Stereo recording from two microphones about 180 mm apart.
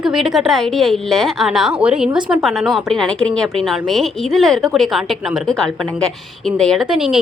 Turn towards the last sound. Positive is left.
turn(degrees=-5)  # may be behind; listen again after turning